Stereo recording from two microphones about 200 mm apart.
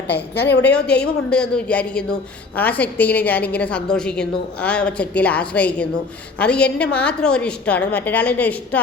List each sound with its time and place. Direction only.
0.3 s a woman's voice: 55° left (ahead or behind)
0.6 s a woman's voice: 5° left (ahead or behind)